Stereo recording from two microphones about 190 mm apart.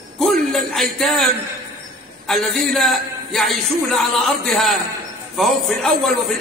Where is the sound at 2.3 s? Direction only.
Centre (ahead or behind).